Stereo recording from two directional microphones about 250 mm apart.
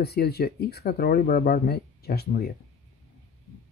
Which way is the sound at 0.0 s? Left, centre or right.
Left.